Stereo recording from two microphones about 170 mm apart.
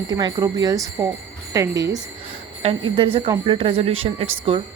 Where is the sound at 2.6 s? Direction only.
30° right (ahead or behind).